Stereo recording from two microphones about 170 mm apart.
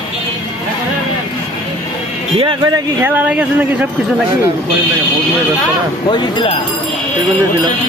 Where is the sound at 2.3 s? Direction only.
25° right (ahead or behind).